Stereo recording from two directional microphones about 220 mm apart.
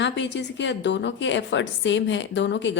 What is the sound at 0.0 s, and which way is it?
A woman's voice, 55° left (ahead or behind).